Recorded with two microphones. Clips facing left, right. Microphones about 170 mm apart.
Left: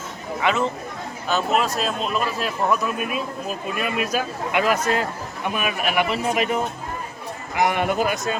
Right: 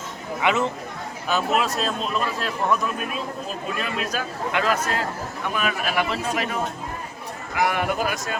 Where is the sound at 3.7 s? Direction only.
10° left (ahead or behind).